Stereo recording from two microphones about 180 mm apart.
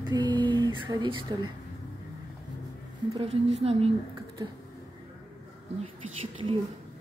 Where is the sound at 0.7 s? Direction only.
10° right (ahead or behind).